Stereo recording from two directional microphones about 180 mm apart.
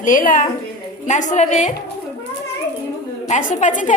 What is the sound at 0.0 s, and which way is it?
A woman's voice, 50° left (ahead or behind).